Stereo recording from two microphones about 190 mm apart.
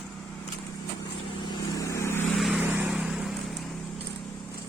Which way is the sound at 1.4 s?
15° left (ahead or behind).